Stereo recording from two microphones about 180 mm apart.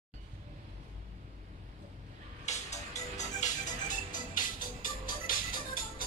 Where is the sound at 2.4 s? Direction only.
40° left (ahead or behind).